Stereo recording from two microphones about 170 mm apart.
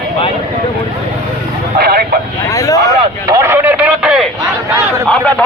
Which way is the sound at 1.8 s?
65° right (ahead or behind).